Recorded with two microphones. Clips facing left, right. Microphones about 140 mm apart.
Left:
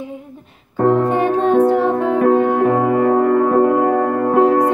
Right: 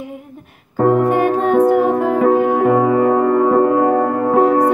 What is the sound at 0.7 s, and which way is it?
Music, 40° right (ahead or behind).